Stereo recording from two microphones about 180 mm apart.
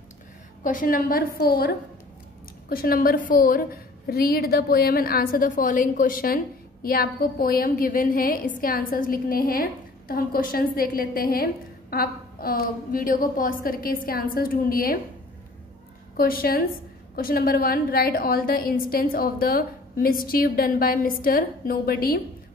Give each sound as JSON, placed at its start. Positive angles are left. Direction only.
{"t": 0.7, "sound": "a woman's voice", "side_deg": 50}
{"t": 16.2, "sound": "a woman's voice", "side_deg": 55}